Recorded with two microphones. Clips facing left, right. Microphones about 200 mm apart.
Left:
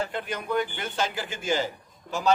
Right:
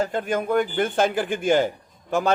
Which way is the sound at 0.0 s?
45° right (ahead or behind).